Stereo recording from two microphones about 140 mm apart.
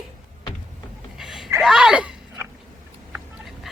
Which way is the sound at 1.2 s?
Centre (ahead or behind).